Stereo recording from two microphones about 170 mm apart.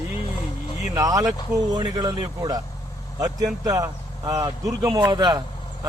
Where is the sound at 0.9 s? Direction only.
20° right (ahead or behind).